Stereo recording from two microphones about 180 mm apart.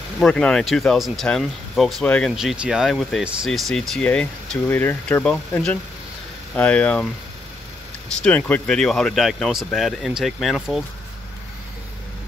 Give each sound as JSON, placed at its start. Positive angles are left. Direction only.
{"t": 0.2, "sound": "speech", "side_deg": 5}
{"t": 8.2, "sound": "speech", "side_deg": 10}